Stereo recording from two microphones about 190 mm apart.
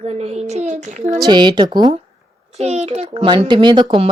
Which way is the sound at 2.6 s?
35° right (ahead or behind).